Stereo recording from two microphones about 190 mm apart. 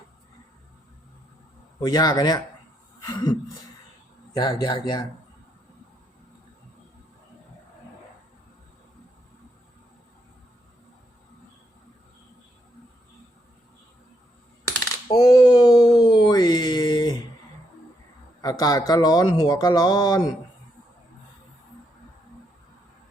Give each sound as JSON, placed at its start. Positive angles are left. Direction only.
{"t": 1.8, "sound": "speech", "side_deg": 20}
{"t": 3.0, "sound": "a sound", "side_deg": 20}
{"t": 4.6, "sound": "speech", "side_deg": 20}
{"t": 15.0, "sound": "speech", "side_deg": 20}
{"t": 18.4, "sound": "speech", "side_deg": 20}